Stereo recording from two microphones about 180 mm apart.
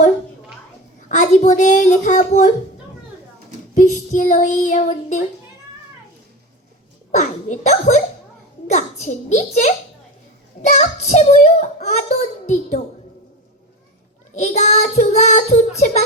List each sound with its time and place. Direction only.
1.0 s a child's voice: 45° left (ahead or behind)
3.8 s a child's voice: 45° left (ahead or behind)
7.1 s speech: 40° left (ahead or behind)
10.8 s speech: 40° left (ahead or behind)
14.3 s speech: 40° left (ahead or behind)